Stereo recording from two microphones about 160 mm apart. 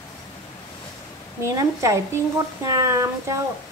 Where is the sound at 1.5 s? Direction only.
20° right (ahead or behind).